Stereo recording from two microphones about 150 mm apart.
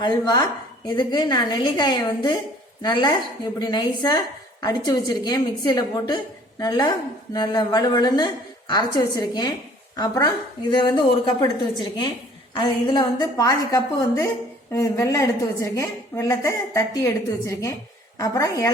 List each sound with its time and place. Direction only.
0.0 s a woman's voice: 25° left (ahead or behind)